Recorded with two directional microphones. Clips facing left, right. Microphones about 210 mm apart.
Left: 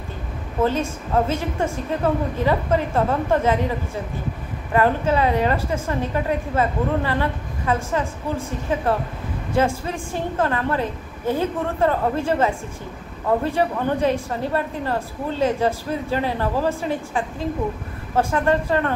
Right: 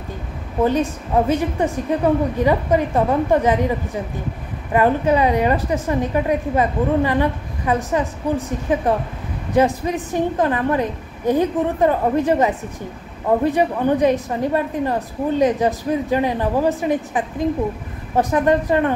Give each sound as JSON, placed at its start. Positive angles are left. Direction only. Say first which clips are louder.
{"t": 0.6, "sound": "a woman's voice", "louder": "right 3 dB", "side_deg": -15}
{"t": 4.7, "sound": "a woman's voice", "louder": "right 3 dB", "side_deg": -15}